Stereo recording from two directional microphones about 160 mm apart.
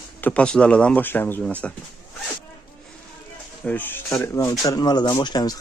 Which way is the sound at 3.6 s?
10° left (ahead or behind).